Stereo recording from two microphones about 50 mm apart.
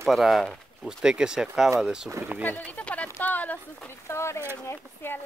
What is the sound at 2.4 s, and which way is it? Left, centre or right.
Speech, left.